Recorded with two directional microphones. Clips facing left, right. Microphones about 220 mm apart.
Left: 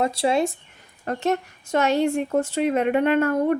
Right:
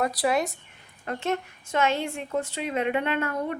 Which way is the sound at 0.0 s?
25° left (ahead or behind).